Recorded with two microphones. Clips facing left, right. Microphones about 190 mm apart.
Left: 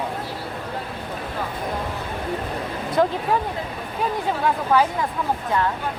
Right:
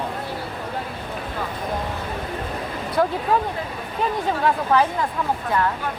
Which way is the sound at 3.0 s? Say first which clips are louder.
Left 1 dB; 20° left (ahead or behind).